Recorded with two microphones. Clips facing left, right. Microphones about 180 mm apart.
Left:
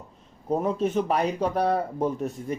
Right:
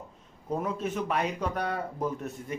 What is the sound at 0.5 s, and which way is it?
A man's voice, 30° left (ahead or behind).